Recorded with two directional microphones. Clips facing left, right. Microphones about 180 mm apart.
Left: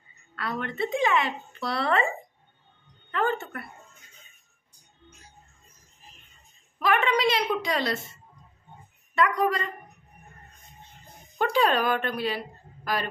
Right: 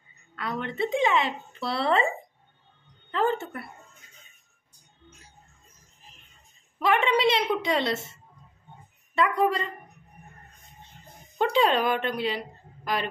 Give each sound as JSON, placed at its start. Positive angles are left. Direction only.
{"t": 0.4, "sound": "speech", "side_deg": -20}
{"t": 3.1, "sound": "speech", "side_deg": -30}
{"t": 6.8, "sound": "a woman's voice", "side_deg": -25}
{"t": 11.3, "sound": "speech", "side_deg": -25}